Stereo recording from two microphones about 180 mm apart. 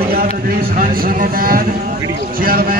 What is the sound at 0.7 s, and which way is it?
A man's voice, 55° right (ahead or behind).